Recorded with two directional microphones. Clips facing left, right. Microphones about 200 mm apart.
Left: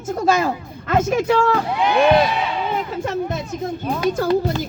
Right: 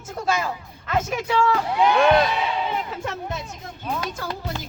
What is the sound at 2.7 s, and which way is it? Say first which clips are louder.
Speech: left 5 dB; 45° left (ahead or behind).